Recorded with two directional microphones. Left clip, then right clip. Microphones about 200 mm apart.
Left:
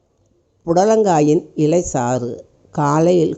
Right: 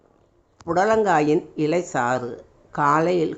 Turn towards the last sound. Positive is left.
turn(degrees=25)  # may be behind; listen again after turning